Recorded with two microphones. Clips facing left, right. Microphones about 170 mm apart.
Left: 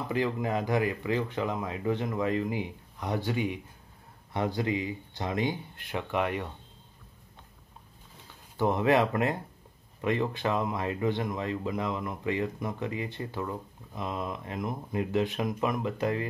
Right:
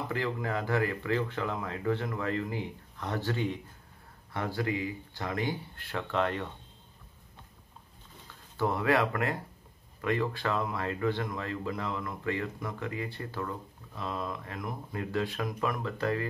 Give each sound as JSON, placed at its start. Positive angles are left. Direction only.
{"t": 0.1, "sound": "speech", "side_deg": 15}
{"t": 8.5, "sound": "speech", "side_deg": 20}